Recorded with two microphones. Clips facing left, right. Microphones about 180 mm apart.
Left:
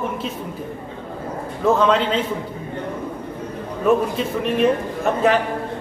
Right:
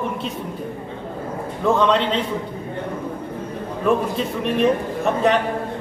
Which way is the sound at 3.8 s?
Centre (ahead or behind).